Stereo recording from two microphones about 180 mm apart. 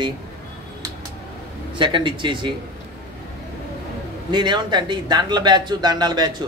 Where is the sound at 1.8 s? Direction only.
25° right (ahead or behind).